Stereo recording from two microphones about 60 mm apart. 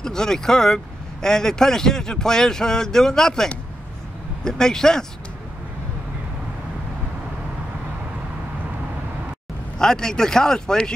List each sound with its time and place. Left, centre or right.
0.0 s speech: centre
9.8 s speech: centre